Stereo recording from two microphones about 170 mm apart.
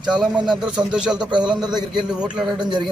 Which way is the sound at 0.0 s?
5° right (ahead or behind).